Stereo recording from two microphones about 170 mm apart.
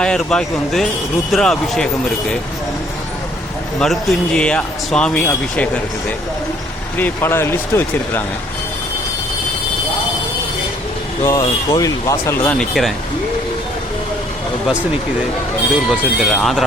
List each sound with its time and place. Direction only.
0.0 s a man's voice: 5° left (ahead or behind)
3.8 s a man's voice: 5° left (ahead or behind)
11.2 s speech: 20° left (ahead or behind); by 12.9 s centre (ahead or behind)
15.9 s a man's voice: centre (ahead or behind)